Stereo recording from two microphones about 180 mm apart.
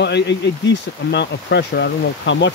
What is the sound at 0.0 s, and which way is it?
Speech, 70° left (ahead or behind).